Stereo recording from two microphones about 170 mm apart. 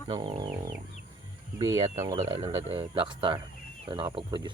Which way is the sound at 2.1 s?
40° right (ahead or behind).